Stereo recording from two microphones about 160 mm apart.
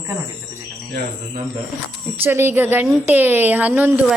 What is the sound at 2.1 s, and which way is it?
A woman's voice, 15° right (ahead or behind).